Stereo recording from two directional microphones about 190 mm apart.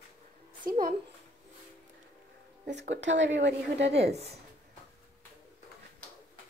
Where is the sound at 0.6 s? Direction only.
50° right (ahead or behind).